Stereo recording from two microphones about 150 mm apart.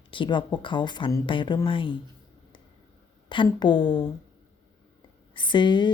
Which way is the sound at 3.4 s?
30° left (ahead or behind).